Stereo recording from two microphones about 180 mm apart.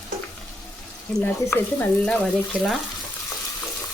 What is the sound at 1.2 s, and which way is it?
Speech, 10° left (ahead or behind).